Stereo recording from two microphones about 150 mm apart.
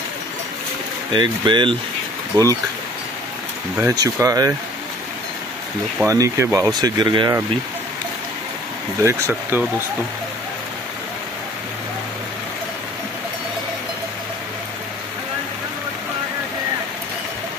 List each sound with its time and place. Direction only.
1.1 s speech: 30° right (ahead or behind)
3.9 s speech: 25° right (ahead or behind)
6.0 s speech: 20° right (ahead or behind)
9.0 s speech: 15° right (ahead or behind)